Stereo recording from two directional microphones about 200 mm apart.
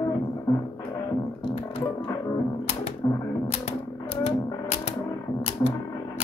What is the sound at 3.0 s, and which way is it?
Typewriter, 20° left (ahead or behind).